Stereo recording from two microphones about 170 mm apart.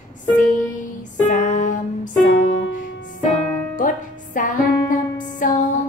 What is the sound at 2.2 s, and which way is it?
Music, 90° left.